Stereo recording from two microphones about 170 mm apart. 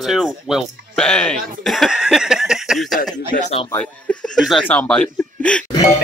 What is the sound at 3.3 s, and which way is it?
Speech, 40° left (ahead or behind).